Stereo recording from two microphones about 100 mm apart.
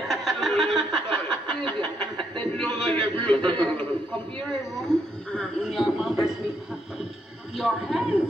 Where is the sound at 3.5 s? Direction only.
15° left (ahead or behind).